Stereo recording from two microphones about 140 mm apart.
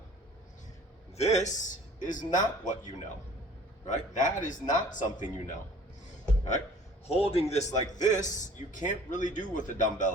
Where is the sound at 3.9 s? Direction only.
65° left (ahead or behind).